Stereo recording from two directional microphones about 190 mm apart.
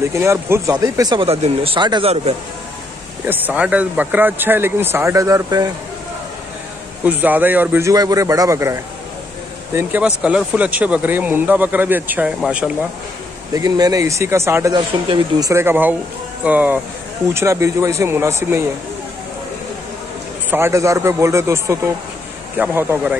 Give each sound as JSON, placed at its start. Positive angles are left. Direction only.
{"t": 0.1, "sound": "speech", "side_deg": -15}
{"t": 3.3, "sound": "speech", "side_deg": -10}
{"t": 7.1, "sound": "speech", "side_deg": -10}
{"t": 13.5, "sound": "speech", "side_deg": -20}
{"t": 20.4, "sound": "speech", "side_deg": -10}